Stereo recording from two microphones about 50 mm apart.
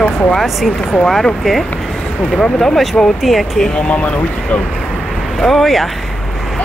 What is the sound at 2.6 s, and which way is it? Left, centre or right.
Speech, centre.